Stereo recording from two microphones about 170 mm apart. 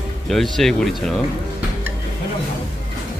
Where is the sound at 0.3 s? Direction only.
Centre (ahead or behind).